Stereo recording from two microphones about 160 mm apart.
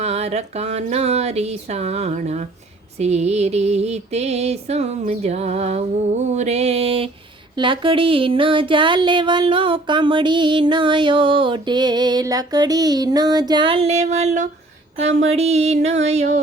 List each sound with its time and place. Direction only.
0.0 s music: 40° right (ahead or behind)
7.6 s a sound: 30° right (ahead or behind)
14.9 s music: 45° right (ahead or behind)